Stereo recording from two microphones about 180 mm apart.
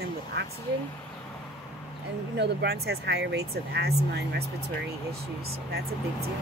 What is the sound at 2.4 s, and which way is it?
Speech, 65° right (ahead or behind).